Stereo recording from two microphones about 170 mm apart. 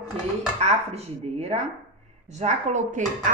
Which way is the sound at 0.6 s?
40° right (ahead or behind).